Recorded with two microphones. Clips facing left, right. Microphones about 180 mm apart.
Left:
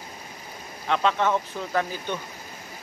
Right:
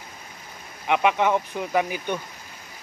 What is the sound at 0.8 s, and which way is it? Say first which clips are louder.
Speech: right 2 dB; 15° right (ahead or behind).